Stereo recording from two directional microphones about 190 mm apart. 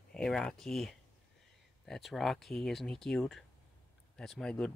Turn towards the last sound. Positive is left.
turn(degrees=5)  # may be behind; listen again after turning